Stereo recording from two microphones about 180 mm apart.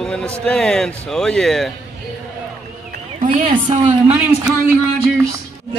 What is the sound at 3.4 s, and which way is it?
Speech, 30° right (ahead or behind).